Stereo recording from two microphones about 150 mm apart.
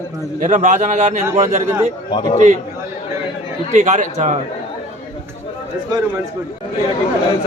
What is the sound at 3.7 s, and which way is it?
Speech, 50° right (ahead or behind).